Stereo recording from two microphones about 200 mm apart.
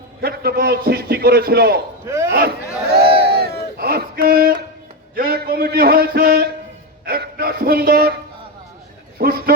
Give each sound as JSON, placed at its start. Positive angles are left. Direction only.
{"t": 0.2, "sound": "a man's voice", "side_deg": -50}
{"t": 2.0, "sound": "speech", "side_deg": -15}
{"t": 2.9, "sound": "a sound", "side_deg": -50}
{"t": 5.1, "sound": "a man's voice", "side_deg": -50}
{"t": 7.0, "sound": "dog", "side_deg": -50}
{"t": 9.1, "sound": "a man's voice", "side_deg": -50}